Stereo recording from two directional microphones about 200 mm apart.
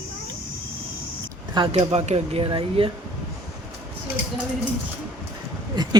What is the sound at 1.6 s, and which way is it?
Speech, 30° right (ahead or behind).